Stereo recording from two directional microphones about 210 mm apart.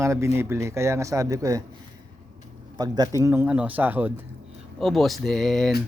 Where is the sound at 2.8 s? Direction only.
20° right (ahead or behind); by 5.7 s centre (ahead or behind).